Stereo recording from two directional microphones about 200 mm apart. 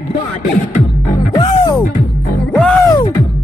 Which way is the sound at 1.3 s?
20° left (ahead or behind).